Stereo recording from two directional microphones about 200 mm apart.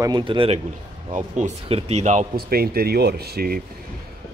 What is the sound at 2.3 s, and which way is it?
Speech, 50° right (ahead or behind).